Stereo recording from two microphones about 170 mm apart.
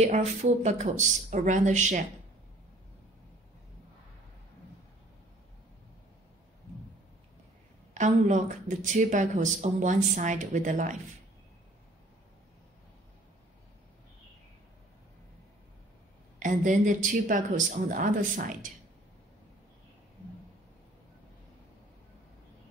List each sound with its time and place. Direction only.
0.0 s speech: 40° right (ahead or behind)
7.9 s speech: 45° right (ahead or behind)
16.3 s speech: 50° right (ahead or behind)